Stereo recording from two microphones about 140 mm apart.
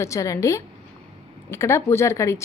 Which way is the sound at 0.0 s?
20° left (ahead or behind).